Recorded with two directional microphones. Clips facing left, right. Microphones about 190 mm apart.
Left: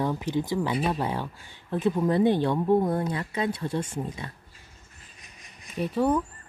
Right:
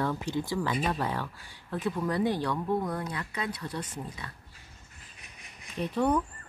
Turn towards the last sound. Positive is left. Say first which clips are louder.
# left 3 dB
turn(degrees=5)  # may be behind; listen again after turning